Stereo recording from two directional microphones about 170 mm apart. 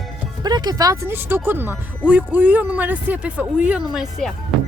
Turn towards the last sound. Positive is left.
turn(degrees=0)  # may be behind; listen again after turning